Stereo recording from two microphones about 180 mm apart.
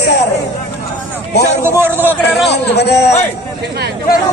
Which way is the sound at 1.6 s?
15° right (ahead or behind).